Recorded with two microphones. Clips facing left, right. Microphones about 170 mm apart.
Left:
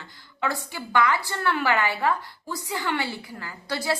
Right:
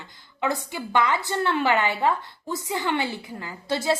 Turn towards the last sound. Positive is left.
turn(degrees=-20)  # may be behind; listen again after turning